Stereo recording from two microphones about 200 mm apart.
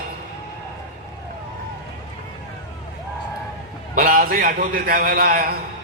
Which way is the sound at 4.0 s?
45° right (ahead or behind).